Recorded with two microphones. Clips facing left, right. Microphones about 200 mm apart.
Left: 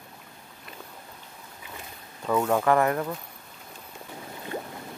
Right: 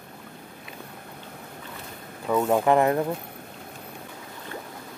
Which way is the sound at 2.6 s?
20° right (ahead or behind).